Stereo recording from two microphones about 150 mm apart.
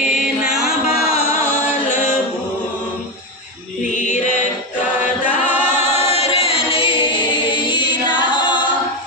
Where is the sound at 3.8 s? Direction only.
55° left (ahead or behind).